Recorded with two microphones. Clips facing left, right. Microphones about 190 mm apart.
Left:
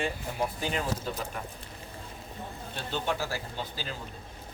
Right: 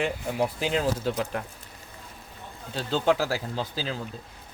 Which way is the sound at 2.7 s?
90° right.